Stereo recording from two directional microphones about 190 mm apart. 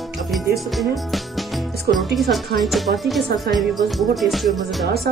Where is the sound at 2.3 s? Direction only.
Centre (ahead or behind).